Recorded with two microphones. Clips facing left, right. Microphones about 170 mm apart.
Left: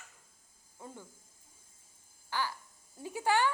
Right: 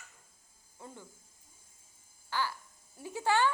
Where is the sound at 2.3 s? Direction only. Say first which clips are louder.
Right 1 dB; 15° left (ahead or behind).